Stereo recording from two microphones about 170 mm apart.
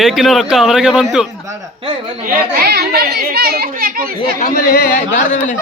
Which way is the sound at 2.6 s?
65° right (ahead or behind).